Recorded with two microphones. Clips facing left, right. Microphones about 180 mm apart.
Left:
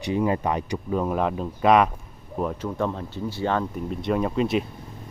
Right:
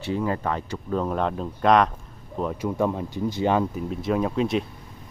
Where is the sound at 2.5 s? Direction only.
10° right (ahead or behind).